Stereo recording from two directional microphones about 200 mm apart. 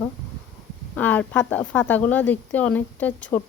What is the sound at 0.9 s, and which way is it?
A woman's voice, 10° left (ahead or behind).